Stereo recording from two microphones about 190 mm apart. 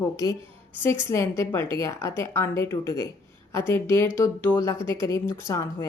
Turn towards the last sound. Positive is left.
turn(degrees=15)  # may be behind; listen again after turning